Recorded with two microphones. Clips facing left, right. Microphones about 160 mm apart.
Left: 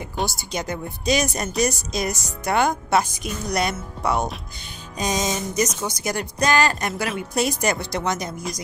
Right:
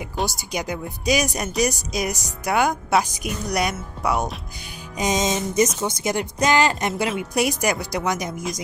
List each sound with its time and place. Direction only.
0.3 s speech: 15° right (ahead or behind)
4.9 s music: 20° right (ahead or behind)
5.8 s speech: 20° right (ahead or behind)